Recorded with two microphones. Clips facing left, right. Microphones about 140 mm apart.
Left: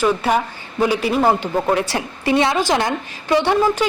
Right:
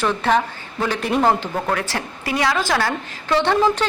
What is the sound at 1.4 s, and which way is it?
A woman's voice, 20° left (ahead or behind).